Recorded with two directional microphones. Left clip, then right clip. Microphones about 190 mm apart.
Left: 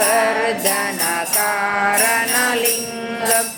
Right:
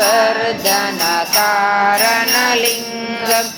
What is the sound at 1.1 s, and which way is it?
Mantra, 10° left (ahead or behind).